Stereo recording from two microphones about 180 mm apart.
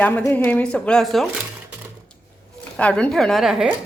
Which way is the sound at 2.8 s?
5° left (ahead or behind).